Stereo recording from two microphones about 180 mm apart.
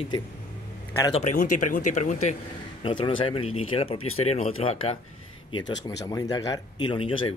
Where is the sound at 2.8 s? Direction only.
30° left (ahead or behind).